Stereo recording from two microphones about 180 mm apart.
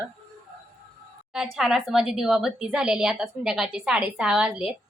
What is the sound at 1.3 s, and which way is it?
A woman's voice, centre (ahead or behind).